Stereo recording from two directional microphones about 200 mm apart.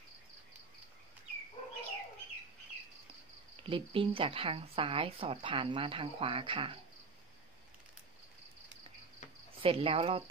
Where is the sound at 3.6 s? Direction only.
25° right (ahead or behind).